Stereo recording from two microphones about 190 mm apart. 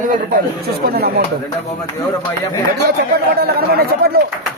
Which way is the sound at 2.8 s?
55° right (ahead or behind).